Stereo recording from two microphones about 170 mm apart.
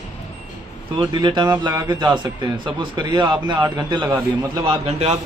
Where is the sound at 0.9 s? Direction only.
25° right (ahead or behind).